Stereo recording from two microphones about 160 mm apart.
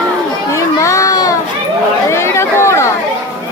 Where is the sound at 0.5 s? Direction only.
20° left (ahead or behind).